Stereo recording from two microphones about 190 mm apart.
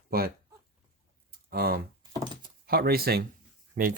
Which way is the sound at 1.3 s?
55° right (ahead or behind).